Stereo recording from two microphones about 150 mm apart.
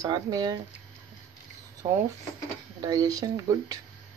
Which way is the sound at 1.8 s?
25° right (ahead or behind).